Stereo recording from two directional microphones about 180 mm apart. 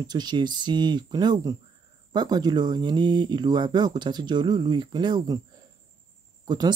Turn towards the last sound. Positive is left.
turn(degrees=-25)  # may be behind; listen again after turning